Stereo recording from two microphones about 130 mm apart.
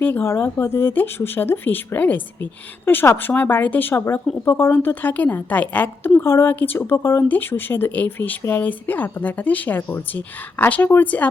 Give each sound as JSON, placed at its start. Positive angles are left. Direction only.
{"t": 0.0, "sound": "a woman's voice", "side_deg": 15}